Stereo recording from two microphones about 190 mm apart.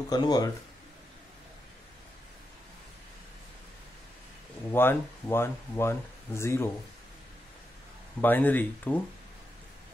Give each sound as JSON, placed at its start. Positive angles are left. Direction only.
{"t": 0.1, "sound": "speech", "side_deg": 20}
{"t": 4.6, "sound": "speech", "side_deg": 10}
{"t": 8.2, "sound": "speech", "side_deg": 10}